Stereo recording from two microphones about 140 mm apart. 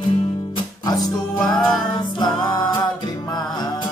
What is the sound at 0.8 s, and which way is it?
Music, 25° left (ahead or behind).